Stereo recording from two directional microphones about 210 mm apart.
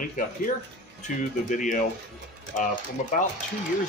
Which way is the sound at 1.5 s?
35° left (ahead or behind).